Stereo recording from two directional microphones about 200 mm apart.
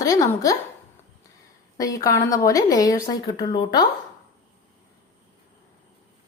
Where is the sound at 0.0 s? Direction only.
15° left (ahead or behind).